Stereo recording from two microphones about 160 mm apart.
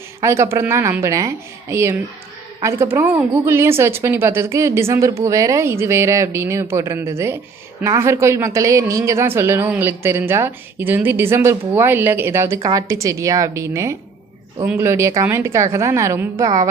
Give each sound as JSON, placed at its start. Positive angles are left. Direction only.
{"t": 0.2, "sound": "a woman's voice", "side_deg": -15}